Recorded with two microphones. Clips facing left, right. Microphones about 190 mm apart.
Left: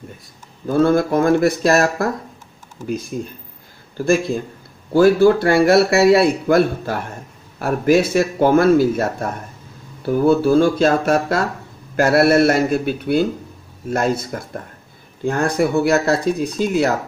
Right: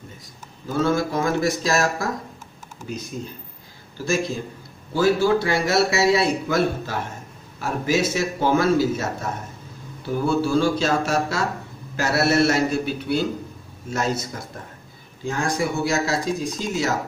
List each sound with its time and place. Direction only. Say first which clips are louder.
0.7 s a man's voice: left 7 dB; 55° left (ahead or behind)
3.1 s a man's voice: left 6 dB; 55° left (ahead or behind)
4.9 s a man's voice: left 7 dB; 55° left (ahead or behind)